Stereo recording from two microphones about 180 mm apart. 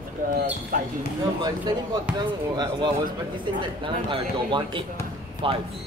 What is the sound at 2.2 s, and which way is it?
Speech, 25° right (ahead or behind).